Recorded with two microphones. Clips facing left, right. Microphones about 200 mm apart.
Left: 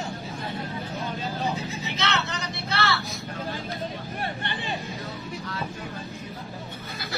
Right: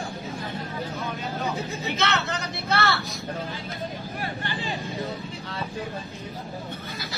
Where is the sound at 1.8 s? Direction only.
55° right (ahead or behind).